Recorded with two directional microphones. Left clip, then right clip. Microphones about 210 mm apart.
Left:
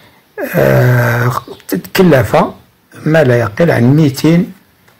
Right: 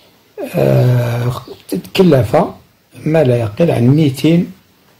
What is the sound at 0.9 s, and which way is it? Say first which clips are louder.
Speech: left 7 dB; 10° left (ahead or behind).